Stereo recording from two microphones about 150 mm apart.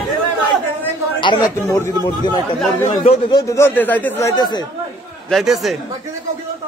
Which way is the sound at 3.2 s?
25° left (ahead or behind).